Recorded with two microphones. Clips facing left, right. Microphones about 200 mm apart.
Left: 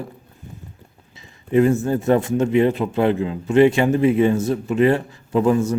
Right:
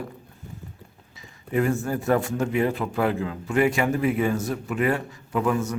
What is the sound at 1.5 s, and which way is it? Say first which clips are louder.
A man's voice: left 7 dB; 25° left (ahead or behind).